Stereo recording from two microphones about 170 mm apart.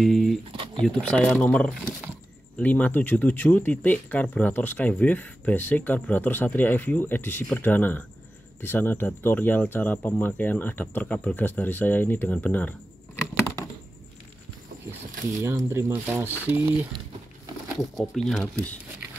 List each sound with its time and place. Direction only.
0.0 s speech: centre (ahead or behind)
0.5 s a sound: 30° right (ahead or behind)
0.8 s speech: 5° left (ahead or behind)
15.4 s speech: 15° right (ahead or behind)
17.7 s speech: centre (ahead or behind)